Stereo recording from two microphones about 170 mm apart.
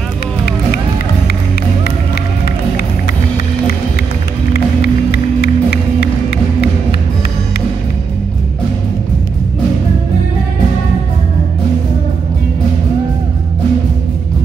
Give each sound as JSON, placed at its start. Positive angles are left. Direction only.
{"t": 4.8, "sound": "music", "side_deg": 65}